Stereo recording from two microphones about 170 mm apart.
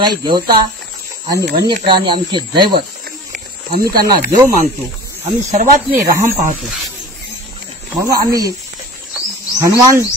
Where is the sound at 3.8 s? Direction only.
20° right (ahead or behind).